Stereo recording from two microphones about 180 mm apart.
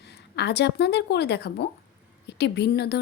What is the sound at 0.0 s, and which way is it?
A woman's voice, 70° left (ahead or behind).